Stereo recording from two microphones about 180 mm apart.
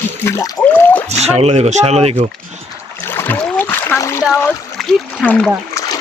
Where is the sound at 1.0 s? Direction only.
35° right (ahead or behind).